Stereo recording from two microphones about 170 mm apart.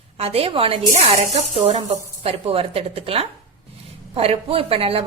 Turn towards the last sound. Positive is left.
turn(degrees=-35)  # may be behind; listen again after turning